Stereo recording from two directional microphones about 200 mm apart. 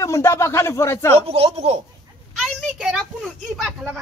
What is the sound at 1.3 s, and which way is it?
Speech, 30° right (ahead or behind).